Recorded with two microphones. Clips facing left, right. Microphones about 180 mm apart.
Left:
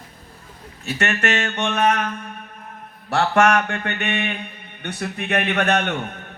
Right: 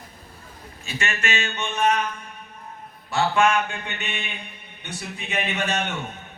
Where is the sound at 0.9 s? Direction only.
70° left (ahead or behind).